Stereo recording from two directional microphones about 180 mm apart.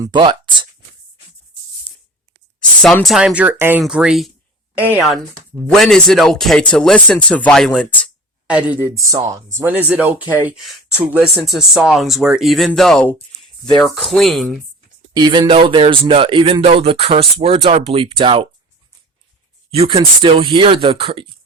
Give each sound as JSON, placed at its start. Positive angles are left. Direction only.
{"t": 0.0, "sound": "speech", "side_deg": -25}
{"t": 2.6, "sound": "speech", "side_deg": 5}
{"t": 8.4, "sound": "speech", "side_deg": -5}
{"t": 13.7, "sound": "speech", "side_deg": 25}
{"t": 13.9, "sound": "speech", "side_deg": 0}
{"t": 15.1, "sound": "speech", "side_deg": -25}
{"t": 19.7, "sound": "speech", "side_deg": -30}